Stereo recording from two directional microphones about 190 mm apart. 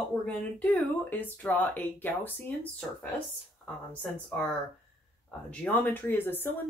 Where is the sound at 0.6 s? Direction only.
10° left (ahead or behind).